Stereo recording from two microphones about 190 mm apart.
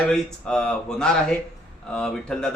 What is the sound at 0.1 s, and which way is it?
A man's voice, 5° left (ahead or behind).